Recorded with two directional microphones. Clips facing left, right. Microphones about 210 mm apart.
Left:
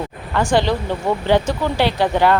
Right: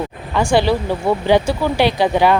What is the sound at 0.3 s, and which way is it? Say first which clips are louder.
Speech: right 2 dB; 10° right (ahead or behind).